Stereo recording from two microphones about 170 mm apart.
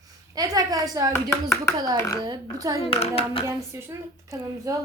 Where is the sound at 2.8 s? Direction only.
35° left (ahead or behind).